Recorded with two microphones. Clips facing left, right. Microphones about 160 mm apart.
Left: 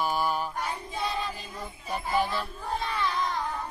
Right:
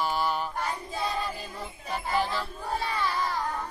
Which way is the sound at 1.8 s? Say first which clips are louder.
Left 1 dB; 10° left (ahead or behind).